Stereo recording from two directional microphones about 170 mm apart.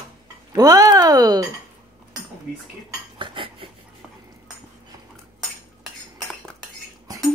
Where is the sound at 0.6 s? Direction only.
20° right (ahead or behind).